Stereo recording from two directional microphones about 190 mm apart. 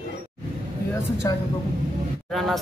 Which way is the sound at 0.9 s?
15° left (ahead or behind).